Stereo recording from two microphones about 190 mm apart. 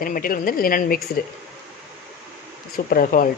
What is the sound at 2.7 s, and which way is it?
Speech, 50° left (ahead or behind).